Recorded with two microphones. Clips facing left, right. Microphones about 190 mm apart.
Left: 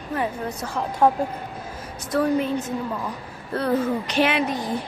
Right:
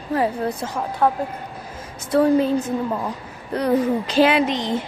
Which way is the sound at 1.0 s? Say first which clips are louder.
Left 1 dB; 10° left (ahead or behind).